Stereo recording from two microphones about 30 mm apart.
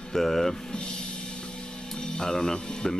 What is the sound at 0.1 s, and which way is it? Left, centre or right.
Speech, centre.